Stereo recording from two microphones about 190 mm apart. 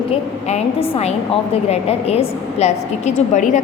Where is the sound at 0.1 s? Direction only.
35° left (ahead or behind).